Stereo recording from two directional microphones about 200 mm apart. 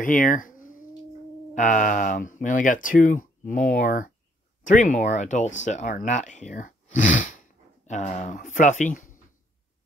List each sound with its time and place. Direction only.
0.0 s speech: 40° left (ahead or behind)